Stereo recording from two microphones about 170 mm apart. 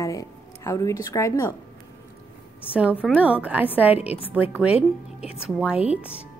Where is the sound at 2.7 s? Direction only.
10° right (ahead or behind).